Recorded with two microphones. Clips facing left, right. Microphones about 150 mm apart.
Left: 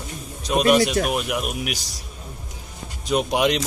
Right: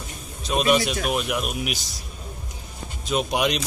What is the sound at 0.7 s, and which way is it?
Speech, 45° left (ahead or behind).